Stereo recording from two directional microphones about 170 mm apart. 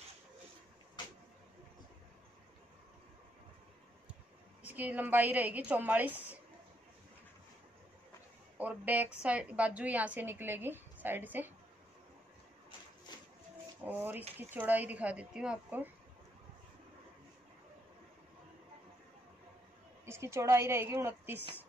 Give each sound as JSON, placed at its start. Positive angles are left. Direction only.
{"t": 4.6, "sound": "a woman's voice", "side_deg": -10}
{"t": 8.5, "sound": "a woman's voice", "side_deg": -10}
{"t": 13.8, "sound": "a woman's voice", "side_deg": -10}
{"t": 20.1, "sound": "a woman's voice", "side_deg": -15}